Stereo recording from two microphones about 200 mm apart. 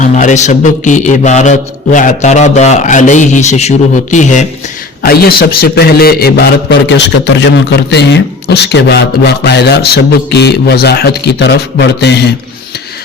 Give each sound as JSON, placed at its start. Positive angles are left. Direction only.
{"t": 0.0, "sound": "mantra", "side_deg": 40}
{"t": 5.0, "sound": "a man's voice", "side_deg": 50}